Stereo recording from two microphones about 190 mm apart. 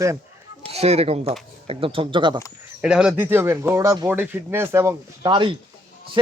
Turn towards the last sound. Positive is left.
turn(degrees=-25)  # may be behind; listen again after turning